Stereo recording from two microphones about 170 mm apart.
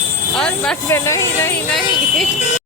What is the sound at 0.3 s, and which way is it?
Speech, 5° left (ahead or behind).